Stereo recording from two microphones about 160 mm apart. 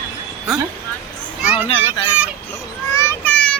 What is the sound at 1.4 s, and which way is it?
Speech, 10° right (ahead or behind).